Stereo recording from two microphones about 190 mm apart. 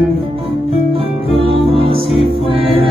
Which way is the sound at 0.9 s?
30° right (ahead or behind).